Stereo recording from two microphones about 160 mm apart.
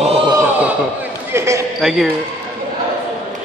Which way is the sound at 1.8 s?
Centre (ahead or behind).